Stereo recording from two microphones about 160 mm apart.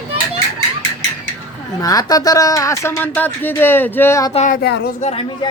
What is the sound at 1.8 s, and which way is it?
Speech, 20° left (ahead or behind).